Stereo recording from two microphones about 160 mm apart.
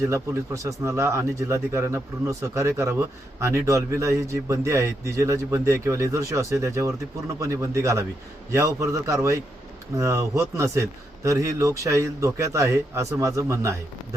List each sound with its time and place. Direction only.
0.0 s a man's voice: 20° right (ahead or behind)